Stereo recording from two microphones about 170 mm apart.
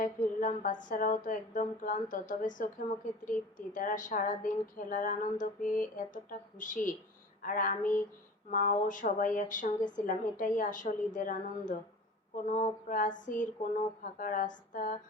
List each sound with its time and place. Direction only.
0.0 s a woman's voice: 50° left (ahead or behind)